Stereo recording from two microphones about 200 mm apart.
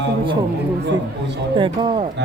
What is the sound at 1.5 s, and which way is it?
Speech, 25° right (ahead or behind).